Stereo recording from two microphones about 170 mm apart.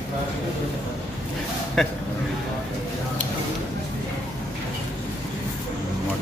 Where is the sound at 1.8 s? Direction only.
Centre (ahead or behind).